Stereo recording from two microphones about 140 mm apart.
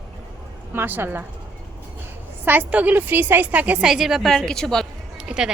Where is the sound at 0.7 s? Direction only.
15° right (ahead or behind).